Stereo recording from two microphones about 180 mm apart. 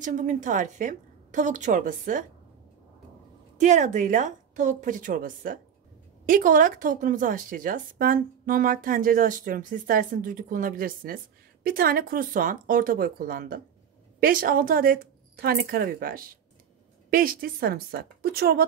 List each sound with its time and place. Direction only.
0.0 s a woman's voice: 45° right (ahead or behind)
3.5 s a woman's voice: 40° right (ahead or behind); by 18.7 s 60° right (ahead or behind)